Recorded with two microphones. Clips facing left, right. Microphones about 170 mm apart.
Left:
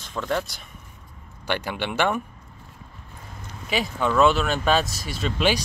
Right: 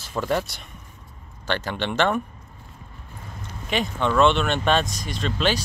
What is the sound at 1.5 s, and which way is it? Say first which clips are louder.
Speech: right 1 dB; 10° left (ahead or behind).